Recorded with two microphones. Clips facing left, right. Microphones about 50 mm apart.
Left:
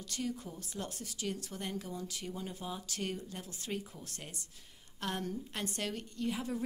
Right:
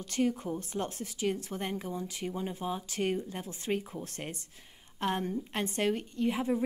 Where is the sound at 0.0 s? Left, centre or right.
Right.